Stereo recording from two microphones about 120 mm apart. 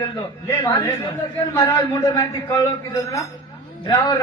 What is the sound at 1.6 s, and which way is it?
A man's voice, 30° left (ahead or behind).